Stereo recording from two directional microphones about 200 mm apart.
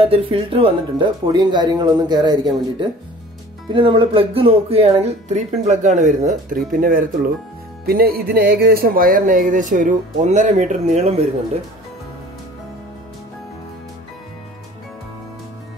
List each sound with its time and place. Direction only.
0.0 s speech: 30° right (ahead or behind)